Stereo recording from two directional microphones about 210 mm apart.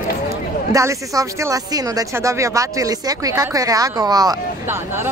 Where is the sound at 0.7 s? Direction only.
15° right (ahead or behind).